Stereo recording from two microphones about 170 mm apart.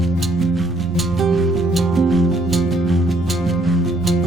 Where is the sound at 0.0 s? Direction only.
Centre (ahead or behind).